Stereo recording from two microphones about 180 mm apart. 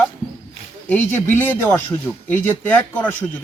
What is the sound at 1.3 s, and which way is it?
Speech, 10° left (ahead or behind).